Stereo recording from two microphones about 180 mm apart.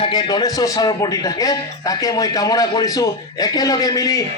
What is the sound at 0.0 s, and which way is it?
A man's voice, 25° left (ahead or behind).